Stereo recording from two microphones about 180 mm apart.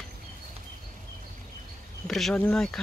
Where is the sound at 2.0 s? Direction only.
Centre (ahead or behind).